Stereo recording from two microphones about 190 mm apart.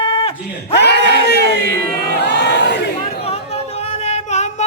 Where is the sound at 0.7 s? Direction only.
60° left (ahead or behind).